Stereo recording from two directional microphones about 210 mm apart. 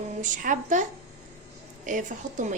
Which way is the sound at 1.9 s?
35° right (ahead or behind).